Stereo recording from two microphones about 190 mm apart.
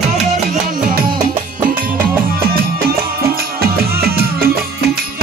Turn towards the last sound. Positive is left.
turn(degrees=-55)  # may be behind; listen again after turning